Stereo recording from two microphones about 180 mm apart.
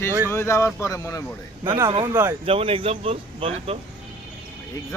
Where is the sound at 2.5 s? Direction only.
30° right (ahead or behind).